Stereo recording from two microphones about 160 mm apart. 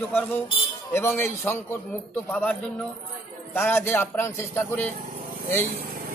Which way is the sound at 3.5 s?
15° left (ahead or behind).